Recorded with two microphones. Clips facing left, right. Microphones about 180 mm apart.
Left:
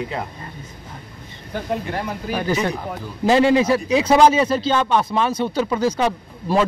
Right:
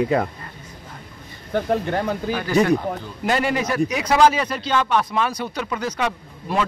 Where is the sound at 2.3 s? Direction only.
25° left (ahead or behind).